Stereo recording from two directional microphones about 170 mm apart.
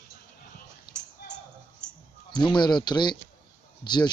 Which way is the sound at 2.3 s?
25° left (ahead or behind).